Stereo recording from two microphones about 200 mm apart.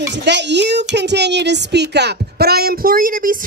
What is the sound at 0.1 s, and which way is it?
Speech, 60° right (ahead or behind).